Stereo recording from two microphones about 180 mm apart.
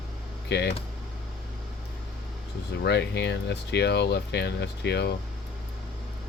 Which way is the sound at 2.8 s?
70° left (ahead or behind).